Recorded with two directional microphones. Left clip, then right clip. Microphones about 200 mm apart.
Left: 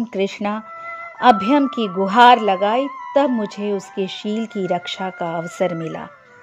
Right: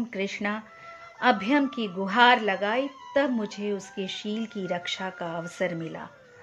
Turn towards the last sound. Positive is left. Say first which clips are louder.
# left 8 dB
turn(degrees=35)  # may be behind; listen again after turning